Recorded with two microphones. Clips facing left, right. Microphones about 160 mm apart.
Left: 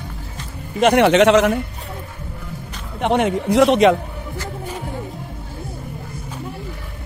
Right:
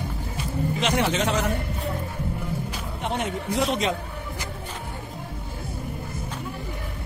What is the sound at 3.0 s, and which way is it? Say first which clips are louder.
Speech: left 11 dB; 75° left (ahead or behind).